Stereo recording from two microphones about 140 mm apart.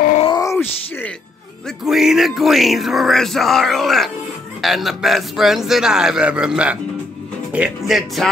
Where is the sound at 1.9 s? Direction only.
Centre (ahead or behind).